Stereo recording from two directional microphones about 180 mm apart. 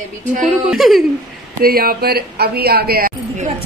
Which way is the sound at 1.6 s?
55° right (ahead or behind).